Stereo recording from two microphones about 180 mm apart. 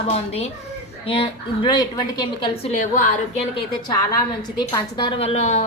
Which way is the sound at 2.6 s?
40° left (ahead or behind).